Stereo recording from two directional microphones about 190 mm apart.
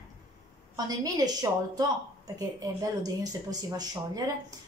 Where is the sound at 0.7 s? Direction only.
20° right (ahead or behind).